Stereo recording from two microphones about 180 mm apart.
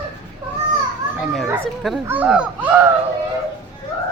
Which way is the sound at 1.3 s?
Centre (ahead or behind).